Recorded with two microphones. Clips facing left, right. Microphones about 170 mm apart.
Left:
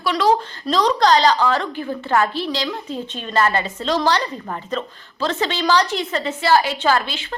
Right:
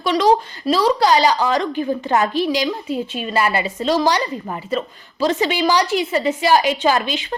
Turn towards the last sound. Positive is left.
turn(degrees=-15)  # may be behind; listen again after turning